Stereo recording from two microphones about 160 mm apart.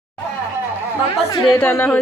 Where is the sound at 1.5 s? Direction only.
10° left (ahead or behind).